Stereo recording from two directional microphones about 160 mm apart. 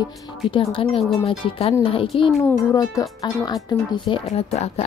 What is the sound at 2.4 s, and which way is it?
Speech, 20° left (ahead or behind).